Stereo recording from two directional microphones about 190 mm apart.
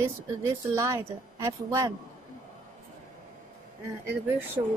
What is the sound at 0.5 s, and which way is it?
A woman's voice, 15° right (ahead or behind).